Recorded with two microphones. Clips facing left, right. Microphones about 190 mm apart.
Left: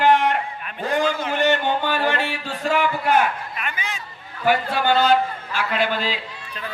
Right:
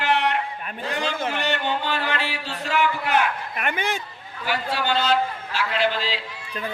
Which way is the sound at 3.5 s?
60° right (ahead or behind).